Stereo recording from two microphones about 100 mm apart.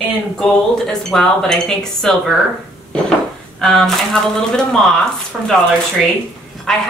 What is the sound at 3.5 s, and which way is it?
A woman's voice, 5° left (ahead or behind).